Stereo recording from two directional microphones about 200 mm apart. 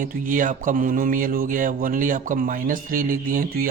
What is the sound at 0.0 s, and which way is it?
A man's voice, 40° right (ahead or behind).